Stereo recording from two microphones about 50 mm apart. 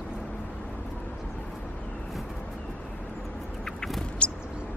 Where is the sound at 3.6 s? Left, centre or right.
Centre.